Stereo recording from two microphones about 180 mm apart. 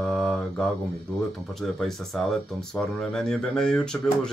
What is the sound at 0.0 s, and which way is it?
Mantra, 5° left (ahead or behind).